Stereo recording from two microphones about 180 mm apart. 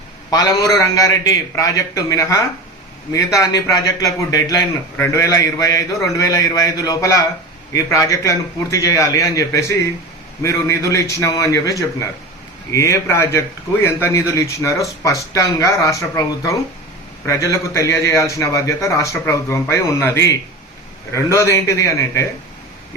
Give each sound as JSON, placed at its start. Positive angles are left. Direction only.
{"t": 0.3, "sound": "a man's voice", "side_deg": 20}